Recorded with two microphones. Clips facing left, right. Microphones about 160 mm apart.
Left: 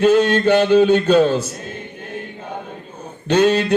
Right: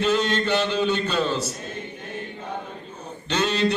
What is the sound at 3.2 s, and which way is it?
Speech, 55° left (ahead or behind).